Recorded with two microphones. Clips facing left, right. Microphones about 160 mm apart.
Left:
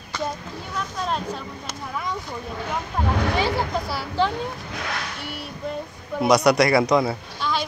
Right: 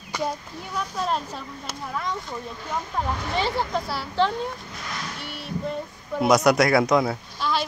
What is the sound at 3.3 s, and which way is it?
Speech, 5° left (ahead or behind).